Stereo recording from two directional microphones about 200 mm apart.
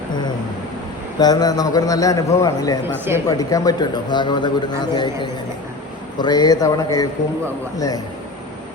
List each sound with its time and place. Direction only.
1.2 s a man's voice: 20° left (ahead or behind)